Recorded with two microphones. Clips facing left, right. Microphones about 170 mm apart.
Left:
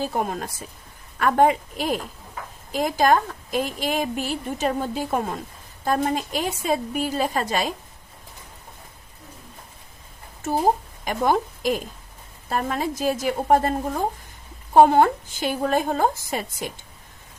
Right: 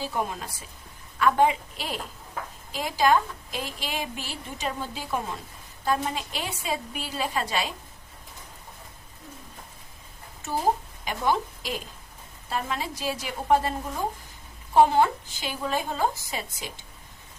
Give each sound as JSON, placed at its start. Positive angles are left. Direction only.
{"t": 0.0, "sound": "a woman's voice", "side_deg": 50}
{"t": 11.0, "sound": "a woman's voice", "side_deg": 45}